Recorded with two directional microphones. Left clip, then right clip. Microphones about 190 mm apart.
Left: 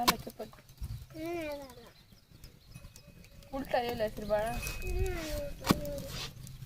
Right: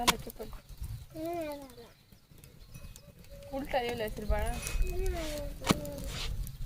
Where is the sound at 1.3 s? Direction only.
25° left (ahead or behind).